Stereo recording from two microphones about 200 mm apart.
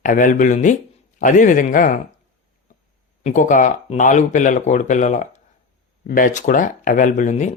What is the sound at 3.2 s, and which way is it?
Speech, 40° left (ahead or behind).